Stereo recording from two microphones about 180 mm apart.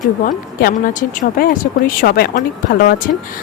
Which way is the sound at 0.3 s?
50° left (ahead or behind).